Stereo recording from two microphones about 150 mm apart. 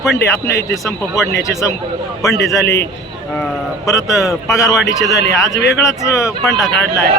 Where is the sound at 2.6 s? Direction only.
90° left.